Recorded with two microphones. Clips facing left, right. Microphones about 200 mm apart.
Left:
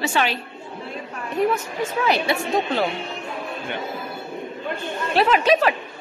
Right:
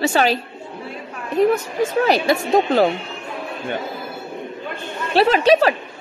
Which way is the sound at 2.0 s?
40° right (ahead or behind).